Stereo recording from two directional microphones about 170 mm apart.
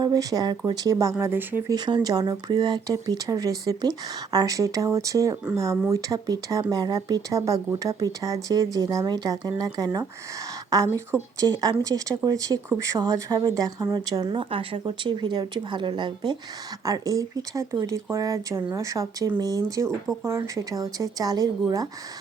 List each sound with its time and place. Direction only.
0.0 s speech: 20° right (ahead or behind)
1.7 s speech: 25° right (ahead or behind)